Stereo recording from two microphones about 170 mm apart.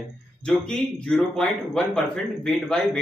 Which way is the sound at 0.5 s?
5° left (ahead or behind).